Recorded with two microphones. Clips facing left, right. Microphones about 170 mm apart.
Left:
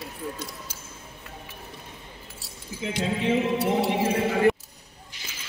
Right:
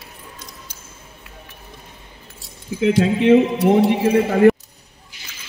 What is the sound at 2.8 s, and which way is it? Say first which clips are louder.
Speech: right 11 dB; 75° right (ahead or behind).